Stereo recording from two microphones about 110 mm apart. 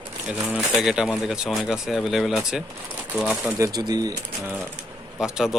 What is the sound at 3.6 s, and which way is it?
Speech, 35° right (ahead or behind).